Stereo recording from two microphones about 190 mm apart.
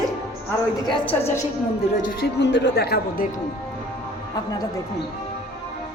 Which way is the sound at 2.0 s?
65° left (ahead or behind).